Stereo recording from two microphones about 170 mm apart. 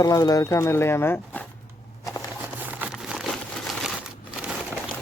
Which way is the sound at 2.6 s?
10° right (ahead or behind).